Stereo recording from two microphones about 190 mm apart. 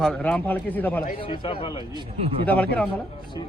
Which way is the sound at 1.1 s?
25° left (ahead or behind).